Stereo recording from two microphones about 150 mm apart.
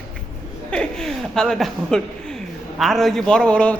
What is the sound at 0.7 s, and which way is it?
A man's voice, 5° left (ahead or behind).